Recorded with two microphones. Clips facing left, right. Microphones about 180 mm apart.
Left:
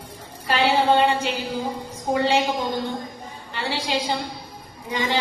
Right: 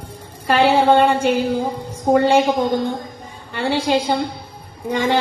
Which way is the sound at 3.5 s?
55° right (ahead or behind).